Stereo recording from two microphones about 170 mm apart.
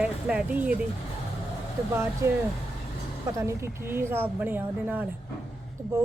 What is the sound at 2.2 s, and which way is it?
Speech, 15° right (ahead or behind).